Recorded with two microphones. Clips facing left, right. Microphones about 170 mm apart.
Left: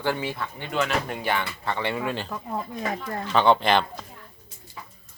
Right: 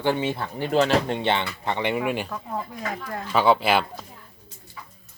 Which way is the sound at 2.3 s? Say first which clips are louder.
Even; 15° left (ahead or behind).